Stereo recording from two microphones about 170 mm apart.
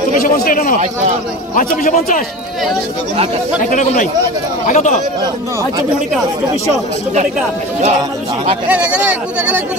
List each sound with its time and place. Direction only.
0.2 s a man's voice: 60° left (ahead or behind)
3.7 s speech: 50° left (ahead or behind)
8.6 s speech: 5° right (ahead or behind)